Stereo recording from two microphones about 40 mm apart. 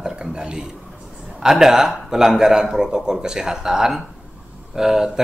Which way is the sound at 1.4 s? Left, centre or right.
Centre.